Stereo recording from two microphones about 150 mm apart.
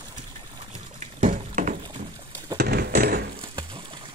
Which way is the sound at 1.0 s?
55° right (ahead or behind).